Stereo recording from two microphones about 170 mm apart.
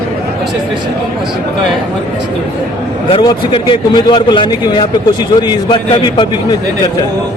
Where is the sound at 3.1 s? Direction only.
30° left (ahead or behind).